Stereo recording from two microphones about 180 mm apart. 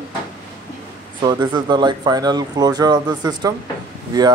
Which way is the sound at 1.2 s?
25° right (ahead or behind).